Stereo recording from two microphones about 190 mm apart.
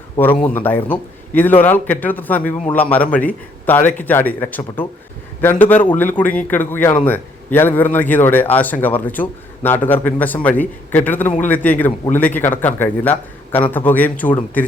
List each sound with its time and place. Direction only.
0.3 s a man's voice: 10° left (ahead or behind)